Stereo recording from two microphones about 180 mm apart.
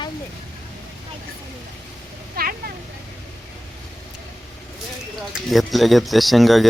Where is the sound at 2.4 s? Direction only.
55° right (ahead or behind).